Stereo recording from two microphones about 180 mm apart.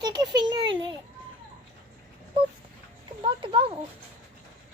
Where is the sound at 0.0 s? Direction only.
25° right (ahead or behind).